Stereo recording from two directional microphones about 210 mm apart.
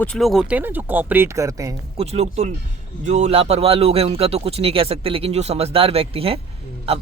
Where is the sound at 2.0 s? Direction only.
30° right (ahead or behind).